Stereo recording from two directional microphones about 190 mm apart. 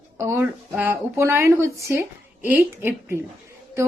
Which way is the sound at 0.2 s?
15° right (ahead or behind).